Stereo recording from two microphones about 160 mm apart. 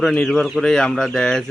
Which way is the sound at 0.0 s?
5° left (ahead or behind).